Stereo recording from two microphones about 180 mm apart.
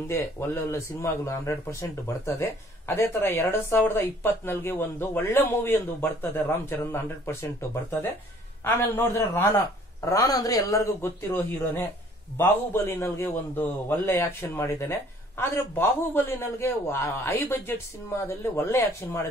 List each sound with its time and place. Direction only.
0.1 s a man's voice: 15° left (ahead or behind)